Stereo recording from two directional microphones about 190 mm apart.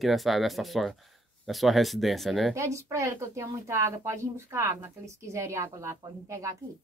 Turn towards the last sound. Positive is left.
turn(degrees=-15)  # may be behind; listen again after turning